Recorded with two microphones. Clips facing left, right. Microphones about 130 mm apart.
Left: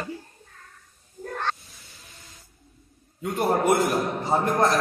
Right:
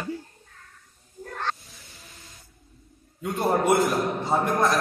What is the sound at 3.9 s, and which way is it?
Speech, 25° left (ahead or behind).